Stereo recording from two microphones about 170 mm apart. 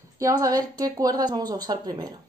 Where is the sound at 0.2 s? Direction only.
20° right (ahead or behind).